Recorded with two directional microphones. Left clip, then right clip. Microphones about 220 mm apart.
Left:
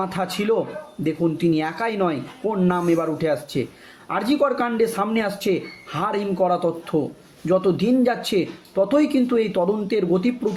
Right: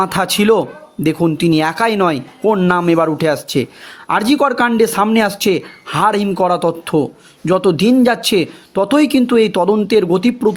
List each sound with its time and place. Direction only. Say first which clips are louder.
0.0 s speech: right 10 dB; 50° right (ahead or behind)